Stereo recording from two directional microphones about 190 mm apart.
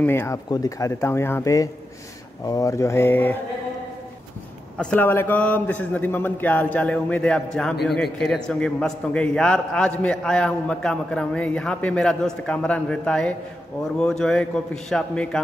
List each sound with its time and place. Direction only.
0.0 s a man's voice: 10° left (ahead or behind)
4.7 s a man's voice: 10° left (ahead or behind)